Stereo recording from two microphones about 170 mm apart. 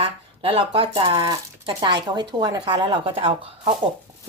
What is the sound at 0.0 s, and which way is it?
A woman's voice, 35° right (ahead or behind).